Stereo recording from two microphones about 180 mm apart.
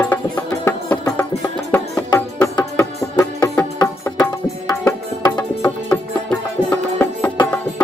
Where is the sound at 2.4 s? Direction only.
15° left (ahead or behind).